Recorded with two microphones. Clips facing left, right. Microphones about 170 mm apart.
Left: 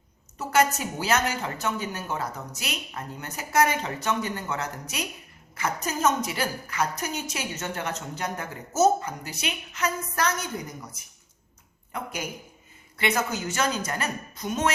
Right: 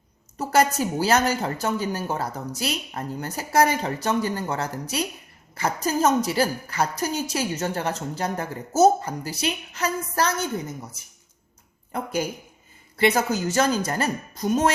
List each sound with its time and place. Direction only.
0.3 s a woman's voice: 35° right (ahead or behind)
11.9 s a woman's voice: 35° right (ahead or behind)